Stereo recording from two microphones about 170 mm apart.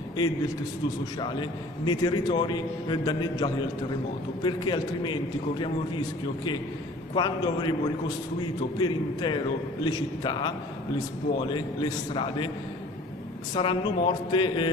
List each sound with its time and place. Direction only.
1.2 s a man's voice: 25° left (ahead or behind)
7.2 s a man's voice: 25° left (ahead or behind)
8.7 s a man's voice: 25° left (ahead or behind)
13.6 s a man's voice: 30° left (ahead or behind)